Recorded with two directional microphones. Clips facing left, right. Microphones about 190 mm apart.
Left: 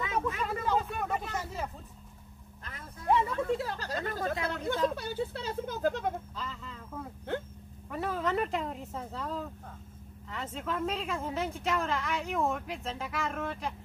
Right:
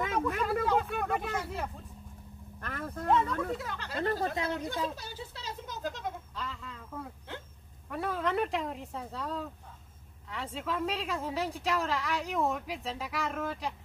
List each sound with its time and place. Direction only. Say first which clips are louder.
0.2 s speech: right 3 dB; centre (ahead or behind)
2.6 s speech: right 10 dB; 60° right (ahead or behind)
3.2 s speech: left 2 dB; 25° left (ahead or behind)
4.6 s speech: left 5 dB; 55° left (ahead or behind)
6.3 s speech: even; centre (ahead or behind)